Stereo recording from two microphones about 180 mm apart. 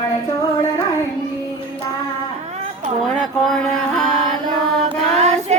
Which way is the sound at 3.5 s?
5° left (ahead or behind).